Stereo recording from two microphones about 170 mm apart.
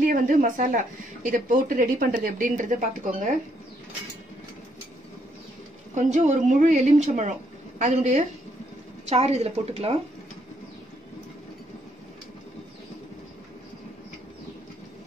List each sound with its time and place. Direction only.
0.0 s speech: 50° right (ahead or behind)
5.9 s a woman's voice: 45° right (ahead or behind)